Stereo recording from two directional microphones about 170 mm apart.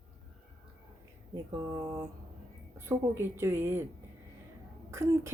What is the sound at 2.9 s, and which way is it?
Speech, 15° right (ahead or behind).